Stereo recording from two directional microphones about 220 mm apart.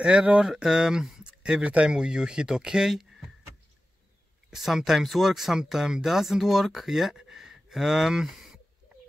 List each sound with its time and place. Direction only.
0.0 s speech: 5° right (ahead or behind)
4.5 s speech: centre (ahead or behind)